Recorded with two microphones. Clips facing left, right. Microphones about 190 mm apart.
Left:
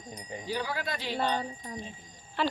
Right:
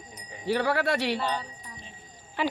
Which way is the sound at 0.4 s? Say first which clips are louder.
Right 9 dB; 70° right (ahead or behind).